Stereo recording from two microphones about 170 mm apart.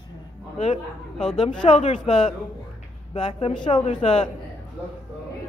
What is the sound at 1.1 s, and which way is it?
Speech, 5° left (ahead or behind).